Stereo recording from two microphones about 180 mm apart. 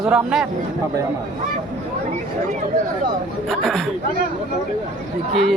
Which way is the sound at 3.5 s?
Centre (ahead or behind).